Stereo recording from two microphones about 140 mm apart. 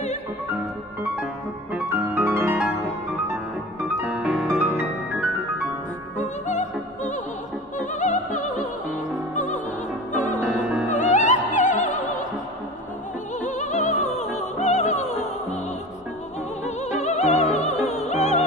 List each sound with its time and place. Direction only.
1.7 s music: 10° right (ahead or behind)
3.9 s music: 5° right (ahead or behind)
6.1 s opera: 60° left (ahead or behind)
7.8 s music: 60° left (ahead or behind)
10.9 s opera: 60° left (ahead or behind)
13.4 s music: 60° left (ahead or behind)
16.6 s music: 55° left (ahead or behind)